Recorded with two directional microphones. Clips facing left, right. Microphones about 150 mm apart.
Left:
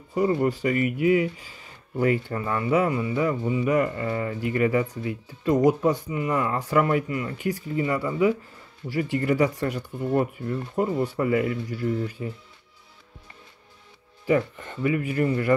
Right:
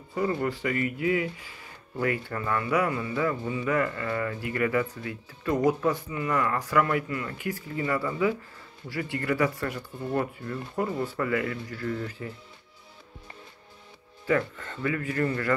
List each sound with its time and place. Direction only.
0.1 s speech: 20° left (ahead or behind)
14.2 s speech: 15° left (ahead or behind)